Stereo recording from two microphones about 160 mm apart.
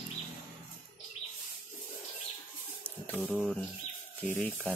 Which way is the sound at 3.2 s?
5° right (ahead or behind).